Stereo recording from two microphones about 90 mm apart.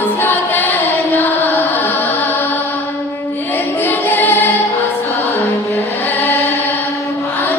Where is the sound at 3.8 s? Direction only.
20° left (ahead or behind).